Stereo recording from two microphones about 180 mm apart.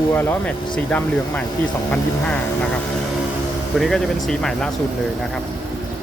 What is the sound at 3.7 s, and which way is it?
Speech, centre (ahead or behind).